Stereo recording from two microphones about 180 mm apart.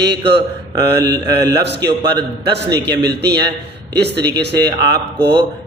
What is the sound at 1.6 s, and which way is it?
Speech, 70° right (ahead or behind).